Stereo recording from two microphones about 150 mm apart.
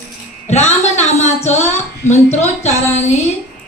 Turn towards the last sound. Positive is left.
turn(degrees=45)  # may be behind; listen again after turning